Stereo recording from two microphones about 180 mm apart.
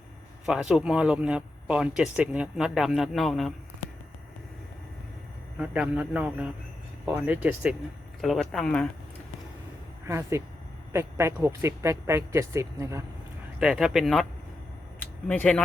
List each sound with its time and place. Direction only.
0.4 s speech: 5° right (ahead or behind)
5.5 s speech: 5° right (ahead or behind)
10.1 s speech: 15° right (ahead or behind)
13.6 s speech: 5° right (ahead or behind)
14.9 s a sound: 10° left (ahead or behind)